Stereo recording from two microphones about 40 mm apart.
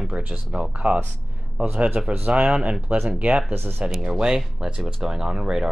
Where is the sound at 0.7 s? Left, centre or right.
Right.